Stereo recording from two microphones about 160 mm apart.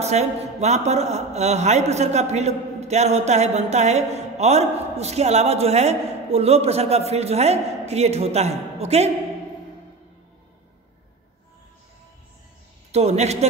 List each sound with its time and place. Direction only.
0.0 s a man's voice: 45° right (ahead or behind)
12.9 s a man's voice: 45° right (ahead or behind)